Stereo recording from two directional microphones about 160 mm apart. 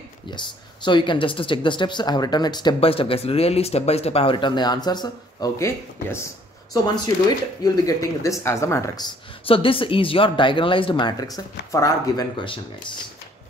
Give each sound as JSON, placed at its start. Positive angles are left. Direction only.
{"t": 0.8, "sound": "speech", "side_deg": 30}
{"t": 7.2, "sound": "speech", "side_deg": 25}
{"t": 9.5, "sound": "speech", "side_deg": 35}